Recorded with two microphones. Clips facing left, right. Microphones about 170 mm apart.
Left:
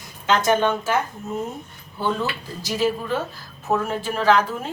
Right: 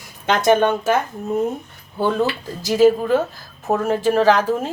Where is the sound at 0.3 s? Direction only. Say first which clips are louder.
Right 4 dB; 60° right (ahead or behind).